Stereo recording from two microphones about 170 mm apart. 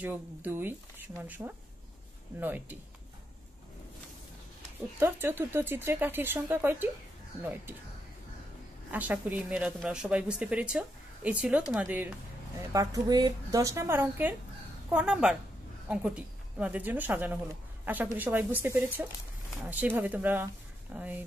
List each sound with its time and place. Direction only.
0.0 s speech: 10° right (ahead or behind)
4.9 s speech: 10° right (ahead or behind)
8.9 s speech: 10° right (ahead or behind)
12.7 s a woman's voice: 20° right (ahead or behind)